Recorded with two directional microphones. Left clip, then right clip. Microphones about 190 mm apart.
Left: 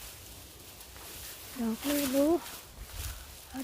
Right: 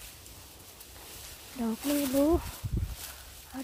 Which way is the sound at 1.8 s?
5° right (ahead or behind).